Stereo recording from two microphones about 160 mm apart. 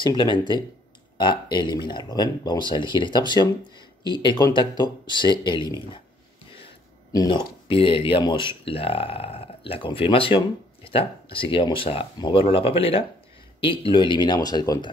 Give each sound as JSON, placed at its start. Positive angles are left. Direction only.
{"t": 0.0, "sound": "speech", "side_deg": 30}
{"t": 7.1, "sound": "speech", "side_deg": 25}